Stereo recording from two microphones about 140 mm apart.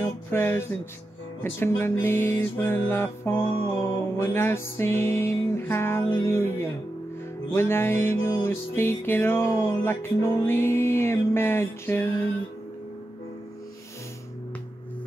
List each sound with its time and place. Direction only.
0.3 s music: 15° left (ahead or behind)